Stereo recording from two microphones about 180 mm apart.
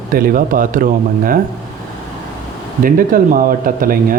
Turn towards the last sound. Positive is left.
turn(degrees=-50)  # may be behind; listen again after turning